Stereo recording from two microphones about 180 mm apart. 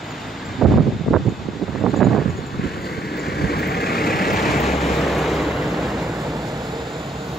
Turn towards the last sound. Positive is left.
turn(degrees=0)  # may be behind; listen again after turning